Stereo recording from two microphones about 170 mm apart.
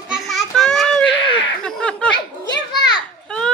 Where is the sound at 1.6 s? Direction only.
5° left (ahead or behind).